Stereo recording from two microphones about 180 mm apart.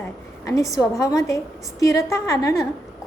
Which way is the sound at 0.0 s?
15° left (ahead or behind).